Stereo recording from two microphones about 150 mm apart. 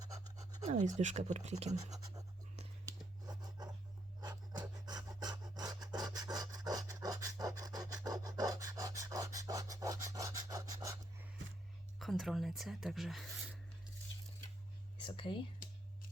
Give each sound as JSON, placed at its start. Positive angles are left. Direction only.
{"t": 0.6, "sound": "speech", "side_deg": -50}
{"t": 1.7, "sound": "speech", "side_deg": -25}
{"t": 4.2, "sound": "filing", "side_deg": -25}
{"t": 11.9, "sound": "speech", "side_deg": 0}
{"t": 14.9, "sound": "whispering", "side_deg": 35}